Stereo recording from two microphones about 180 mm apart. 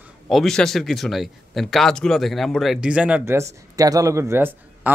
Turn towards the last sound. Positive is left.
turn(degrees=-10)  # may be behind; listen again after turning